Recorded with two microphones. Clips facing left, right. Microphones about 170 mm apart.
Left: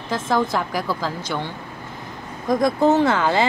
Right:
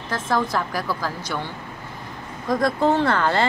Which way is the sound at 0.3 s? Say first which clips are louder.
Left 2 dB; 15° left (ahead or behind).